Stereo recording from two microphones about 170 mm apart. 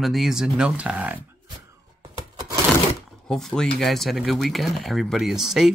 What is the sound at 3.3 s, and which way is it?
Speech, 5° left (ahead or behind).